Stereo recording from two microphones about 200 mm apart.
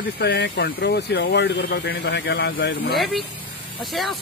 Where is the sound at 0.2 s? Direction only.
60° left (ahead or behind).